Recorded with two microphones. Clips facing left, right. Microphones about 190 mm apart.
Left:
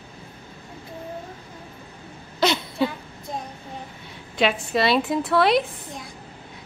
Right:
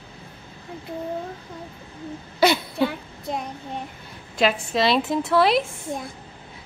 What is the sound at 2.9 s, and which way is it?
Child singing, 70° right (ahead or behind).